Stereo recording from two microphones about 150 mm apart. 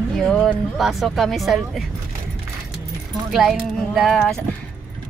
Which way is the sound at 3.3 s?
Centre (ahead or behind).